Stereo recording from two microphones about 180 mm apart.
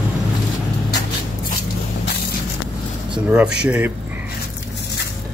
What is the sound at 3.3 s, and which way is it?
Speech, 5° right (ahead or behind).